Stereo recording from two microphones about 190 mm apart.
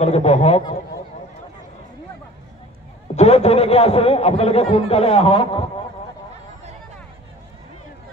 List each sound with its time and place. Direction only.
0.0 s a man's voice: 35° left (ahead or behind)
3.2 s a man's voice: 35° left (ahead or behind)